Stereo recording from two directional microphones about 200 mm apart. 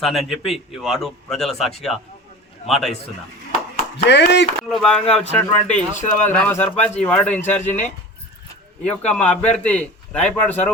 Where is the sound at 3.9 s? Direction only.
60° left (ahead or behind).